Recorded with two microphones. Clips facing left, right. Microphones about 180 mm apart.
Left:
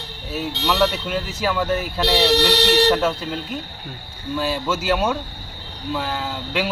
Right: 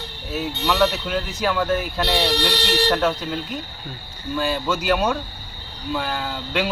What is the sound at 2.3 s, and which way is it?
Speech, 75° left (ahead or behind).